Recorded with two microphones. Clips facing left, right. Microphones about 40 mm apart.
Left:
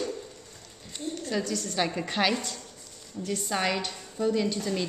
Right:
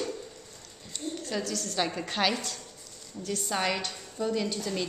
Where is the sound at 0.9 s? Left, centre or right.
Centre.